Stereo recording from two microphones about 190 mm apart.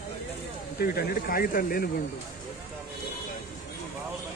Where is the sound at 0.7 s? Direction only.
55° left (ahead or behind).